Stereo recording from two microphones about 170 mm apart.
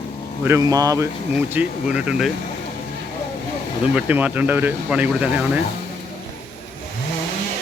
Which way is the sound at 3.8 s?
5° right (ahead or behind).